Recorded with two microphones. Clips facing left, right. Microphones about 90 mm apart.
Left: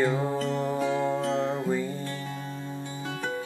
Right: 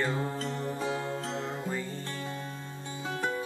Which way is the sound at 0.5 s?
75° left (ahead or behind).